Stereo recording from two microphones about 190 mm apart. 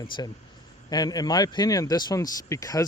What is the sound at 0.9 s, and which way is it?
Speech, 20° left (ahead or behind).